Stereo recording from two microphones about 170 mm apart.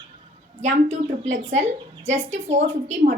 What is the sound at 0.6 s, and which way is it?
A woman's voice, 45° right (ahead or behind).